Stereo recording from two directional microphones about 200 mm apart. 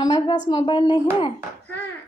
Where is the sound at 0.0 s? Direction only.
20° left (ahead or behind).